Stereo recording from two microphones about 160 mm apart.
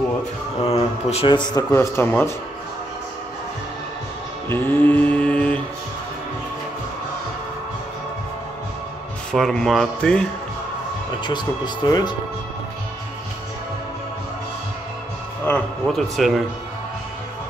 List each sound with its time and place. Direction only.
0.7 s speech: 40° left (ahead or behind); by 2.3 s 15° left (ahead or behind)
4.5 s mantra: 10° left (ahead or behind)
9.3 s speech: 5° left (ahead or behind)
11.2 s speech: 25° left (ahead or behind)
15.4 s speech: 10° left (ahead or behind)
16.2 s speech: centre (ahead or behind)